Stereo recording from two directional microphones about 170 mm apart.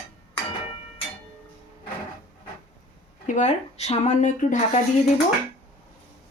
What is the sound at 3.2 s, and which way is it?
Speech, 45° left (ahead or behind).